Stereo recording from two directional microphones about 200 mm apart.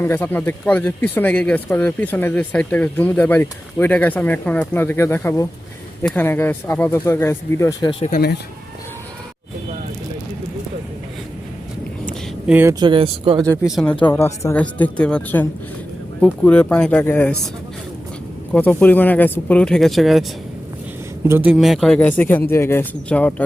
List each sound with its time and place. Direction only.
0.0 s speech: 10° left (ahead or behind)
7.8 s speech: 25° left (ahead or behind)
12.5 s speech: 10° right (ahead or behind)
12.8 s speech: 25° right (ahead or behind)
14.0 s speech: 10° left (ahead or behind)
18.5 s speech: 10° left (ahead or behind)
21.2 s speech: 10° right (ahead or behind); by 23.3 s 5° left (ahead or behind)